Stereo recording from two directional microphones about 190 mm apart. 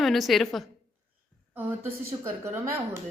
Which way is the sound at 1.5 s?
10° right (ahead or behind).